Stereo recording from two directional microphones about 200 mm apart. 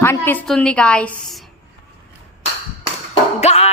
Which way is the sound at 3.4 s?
30° left (ahead or behind).